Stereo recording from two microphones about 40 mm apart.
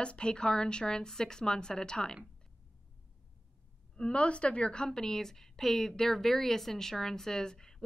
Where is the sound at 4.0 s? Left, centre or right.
Left.